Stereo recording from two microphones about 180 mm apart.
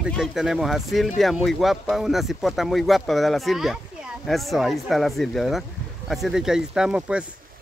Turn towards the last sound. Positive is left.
turn(degrees=-5)  # may be behind; listen again after turning